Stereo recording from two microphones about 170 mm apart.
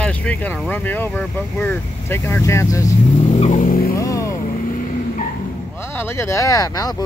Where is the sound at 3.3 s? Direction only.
45° left (ahead or behind).